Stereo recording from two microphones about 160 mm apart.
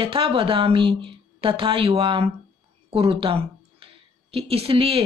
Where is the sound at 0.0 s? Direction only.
35° right (ahead or behind).